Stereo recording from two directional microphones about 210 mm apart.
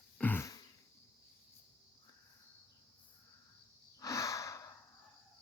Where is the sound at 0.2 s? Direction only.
10° left (ahead or behind).